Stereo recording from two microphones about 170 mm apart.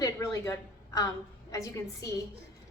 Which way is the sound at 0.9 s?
20° left (ahead or behind).